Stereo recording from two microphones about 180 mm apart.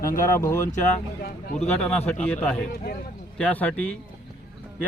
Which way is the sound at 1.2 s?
60° left (ahead or behind).